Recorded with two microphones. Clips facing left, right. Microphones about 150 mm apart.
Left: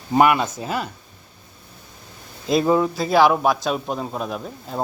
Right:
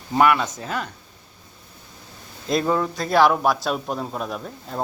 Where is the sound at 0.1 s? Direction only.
20° left (ahead or behind).